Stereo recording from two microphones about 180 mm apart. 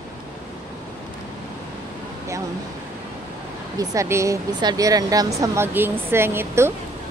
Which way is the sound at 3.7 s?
15° right (ahead or behind).